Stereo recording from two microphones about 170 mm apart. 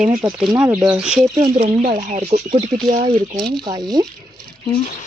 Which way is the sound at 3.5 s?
25° right (ahead or behind).